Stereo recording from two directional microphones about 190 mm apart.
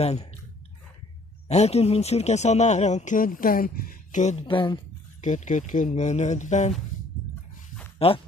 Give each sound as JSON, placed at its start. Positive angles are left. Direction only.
{"t": 0.0, "sound": "speech", "side_deg": 35}
{"t": 1.5, "sound": "speech", "side_deg": 35}
{"t": 5.2, "sound": "speech", "side_deg": 40}
{"t": 8.0, "sound": "speech", "side_deg": 30}